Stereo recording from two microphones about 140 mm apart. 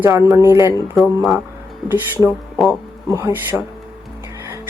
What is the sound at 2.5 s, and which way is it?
Music, centre (ahead or behind).